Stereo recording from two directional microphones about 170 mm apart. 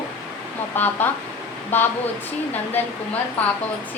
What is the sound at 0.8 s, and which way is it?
A woman's voice, 10° left (ahead or behind).